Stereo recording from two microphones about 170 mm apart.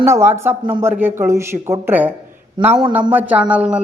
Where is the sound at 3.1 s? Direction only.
10° right (ahead or behind).